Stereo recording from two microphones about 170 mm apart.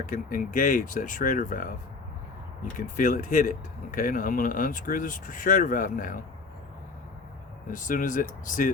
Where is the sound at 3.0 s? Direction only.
50° left (ahead or behind).